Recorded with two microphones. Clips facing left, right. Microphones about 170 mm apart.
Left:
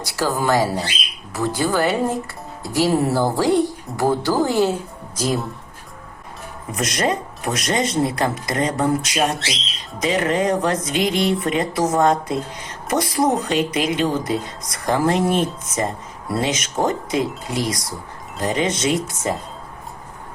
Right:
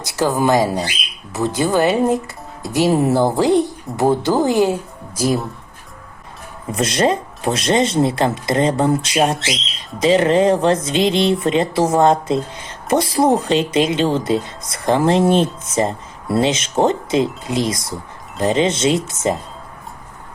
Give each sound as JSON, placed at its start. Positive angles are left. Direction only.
{"t": 0.0, "sound": "speech", "side_deg": -20}
{"t": 6.7, "sound": "speech", "side_deg": -30}